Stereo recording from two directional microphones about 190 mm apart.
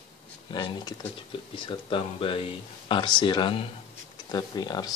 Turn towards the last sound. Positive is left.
turn(degrees=20)  # may be behind; listen again after turning